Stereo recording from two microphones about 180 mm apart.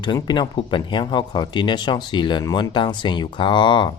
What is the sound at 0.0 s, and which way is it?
A man's voice, 25° left (ahead or behind).